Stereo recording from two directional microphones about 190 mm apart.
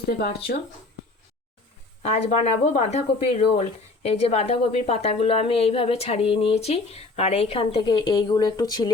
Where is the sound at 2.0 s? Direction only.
35° left (ahead or behind).